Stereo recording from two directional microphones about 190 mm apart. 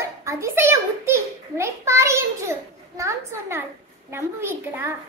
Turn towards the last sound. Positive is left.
turn(degrees=-10)  # may be behind; listen again after turning